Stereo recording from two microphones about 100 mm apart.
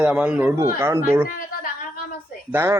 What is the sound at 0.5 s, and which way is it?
Speech, 25° right (ahead or behind).